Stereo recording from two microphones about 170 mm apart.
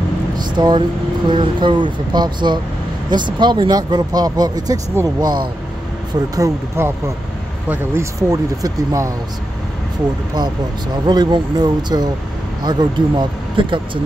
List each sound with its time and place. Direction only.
0.4 s vehicle: 25° right (ahead or behind)
1.3 s speech: 30° right (ahead or behind)
11.1 s speech: 25° right (ahead or behind)